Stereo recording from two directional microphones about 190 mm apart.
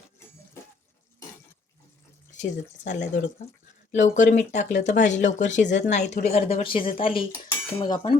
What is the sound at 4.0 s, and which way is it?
Speech, 40° left (ahead or behind).